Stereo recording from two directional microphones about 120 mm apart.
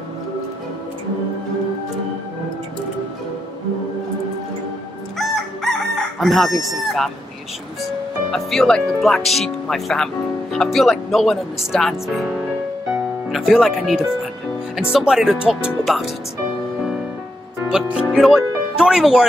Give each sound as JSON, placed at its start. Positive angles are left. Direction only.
{"t": 5.2, "sound": "crowing", "side_deg": 0}
{"t": 8.3, "sound": "speech", "side_deg": 0}
{"t": 17.6, "sound": "speech", "side_deg": -5}